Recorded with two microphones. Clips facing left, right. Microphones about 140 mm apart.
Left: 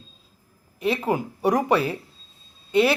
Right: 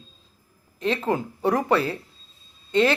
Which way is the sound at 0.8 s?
10° left (ahead or behind).